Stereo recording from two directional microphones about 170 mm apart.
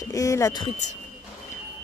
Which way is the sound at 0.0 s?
20° left (ahead or behind).